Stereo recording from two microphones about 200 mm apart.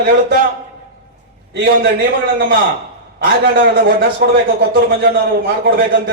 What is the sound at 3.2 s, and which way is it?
A man's voice, 55° right (ahead or behind).